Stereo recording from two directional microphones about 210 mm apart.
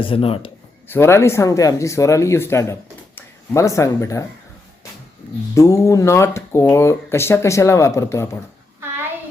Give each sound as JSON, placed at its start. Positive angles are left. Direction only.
{"t": 0.0, "sound": "a man's voice", "side_deg": 25}
{"t": 0.9, "sound": "speech", "side_deg": 10}
{"t": 5.5, "sound": "speech", "side_deg": 15}